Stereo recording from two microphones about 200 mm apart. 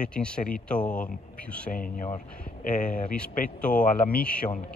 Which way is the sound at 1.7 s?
45° left (ahead or behind).